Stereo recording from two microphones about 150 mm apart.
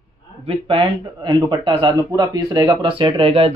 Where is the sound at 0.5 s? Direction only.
35° right (ahead or behind).